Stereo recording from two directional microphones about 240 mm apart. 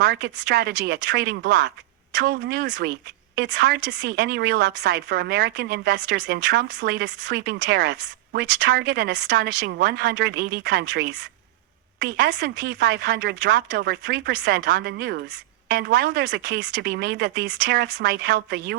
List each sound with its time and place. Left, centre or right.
0.0 s a woman's voice: right